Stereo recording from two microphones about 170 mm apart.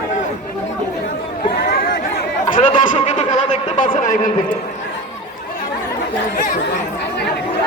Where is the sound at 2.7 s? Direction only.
45° left (ahead or behind).